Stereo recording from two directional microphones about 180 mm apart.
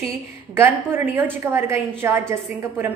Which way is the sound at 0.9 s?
10° right (ahead or behind).